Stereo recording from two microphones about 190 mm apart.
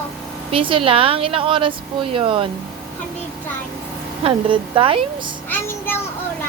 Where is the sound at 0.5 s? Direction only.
30° right (ahead or behind).